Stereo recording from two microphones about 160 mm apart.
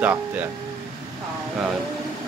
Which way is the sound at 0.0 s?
10° right (ahead or behind).